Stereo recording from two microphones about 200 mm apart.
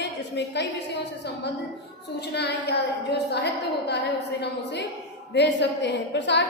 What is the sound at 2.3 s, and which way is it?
A woman's voice, 55° left (ahead or behind).